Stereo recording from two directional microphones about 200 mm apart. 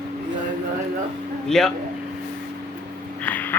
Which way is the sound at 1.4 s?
Centre (ahead or behind).